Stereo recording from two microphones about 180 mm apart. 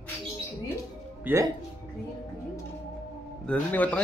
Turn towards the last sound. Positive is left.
turn(degrees=10)  # may be behind; listen again after turning